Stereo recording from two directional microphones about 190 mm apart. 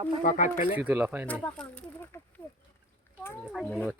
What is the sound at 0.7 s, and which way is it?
Speech, 10° right (ahead or behind).